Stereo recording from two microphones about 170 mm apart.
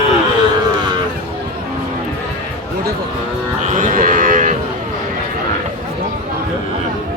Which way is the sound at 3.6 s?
50° right (ahead or behind).